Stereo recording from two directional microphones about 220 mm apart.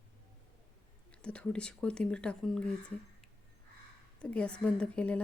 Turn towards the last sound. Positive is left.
turn(degrees=5)  # may be behind; listen again after turning